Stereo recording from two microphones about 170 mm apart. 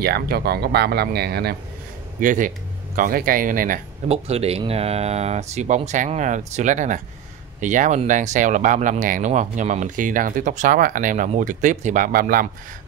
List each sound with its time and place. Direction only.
0.0 s speech: 70° right (ahead or behind)
2.1 s speech: 50° right (ahead or behind)
4.1 s speech: 35° right (ahead or behind); by 12.4 s 60° right (ahead or behind)